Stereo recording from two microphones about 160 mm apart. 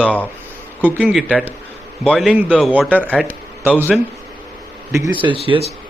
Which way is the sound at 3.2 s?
10° right (ahead or behind).